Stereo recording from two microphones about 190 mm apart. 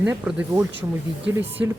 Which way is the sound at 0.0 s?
10° right (ahead or behind).